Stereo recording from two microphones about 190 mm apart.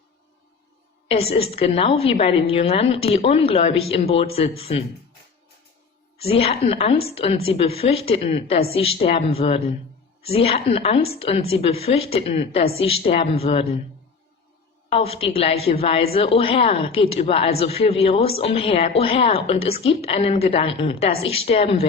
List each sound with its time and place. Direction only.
1.0 s a woman's voice: 30° left (ahead or behind)
6.2 s a woman's voice: 30° left (ahead or behind)
14.8 s a woman's voice: 30° left (ahead or behind)